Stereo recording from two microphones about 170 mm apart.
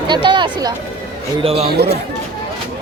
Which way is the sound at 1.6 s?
70° right (ahead or behind).